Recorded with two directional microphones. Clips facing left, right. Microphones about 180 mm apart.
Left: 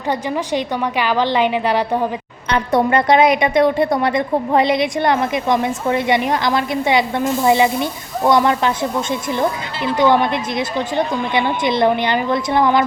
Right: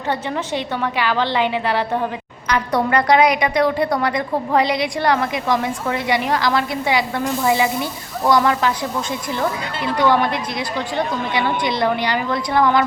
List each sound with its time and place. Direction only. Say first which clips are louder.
0.1 s a woman's voice: left 3 dB; 15° left (ahead or behind)